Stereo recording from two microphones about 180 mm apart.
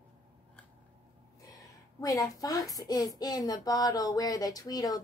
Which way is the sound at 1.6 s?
20° left (ahead or behind).